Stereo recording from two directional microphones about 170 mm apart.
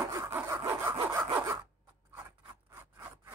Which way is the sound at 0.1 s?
15° right (ahead or behind).